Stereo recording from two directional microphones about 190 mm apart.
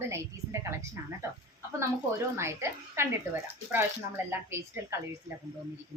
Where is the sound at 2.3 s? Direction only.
15° right (ahead or behind).